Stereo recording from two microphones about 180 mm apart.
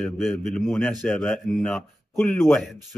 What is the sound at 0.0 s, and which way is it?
Speech, centre (ahead or behind).